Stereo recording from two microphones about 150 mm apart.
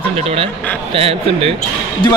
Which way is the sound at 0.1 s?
40° right (ahead or behind).